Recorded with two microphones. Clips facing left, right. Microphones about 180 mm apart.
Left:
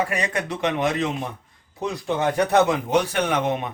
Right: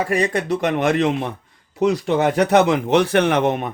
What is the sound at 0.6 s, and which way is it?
Speech, 55° right (ahead or behind).